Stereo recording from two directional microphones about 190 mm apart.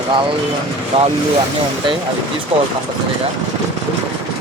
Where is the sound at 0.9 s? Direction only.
30° right (ahead or behind).